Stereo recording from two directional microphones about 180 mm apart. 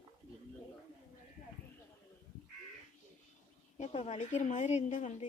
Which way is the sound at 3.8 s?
40° left (ahead or behind).